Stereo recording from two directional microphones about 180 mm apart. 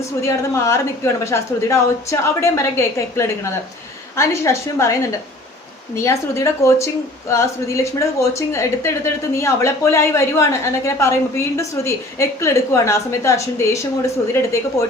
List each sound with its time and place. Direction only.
0.2 s a woman's voice: 15° left (ahead or behind)